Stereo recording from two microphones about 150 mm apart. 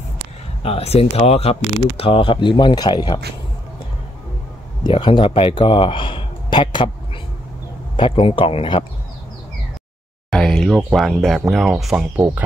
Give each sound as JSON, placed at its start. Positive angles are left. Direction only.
{"t": 0.7, "sound": "speech", "side_deg": 40}
{"t": 4.8, "sound": "speech", "side_deg": 35}
{"t": 7.9, "sound": "speech", "side_deg": 35}
{"t": 10.3, "sound": "speech", "side_deg": 5}